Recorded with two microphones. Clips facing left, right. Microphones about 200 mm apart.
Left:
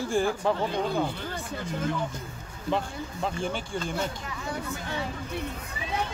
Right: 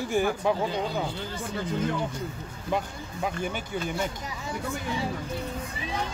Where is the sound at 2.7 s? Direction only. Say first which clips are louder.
Even; 10° right (ahead or behind).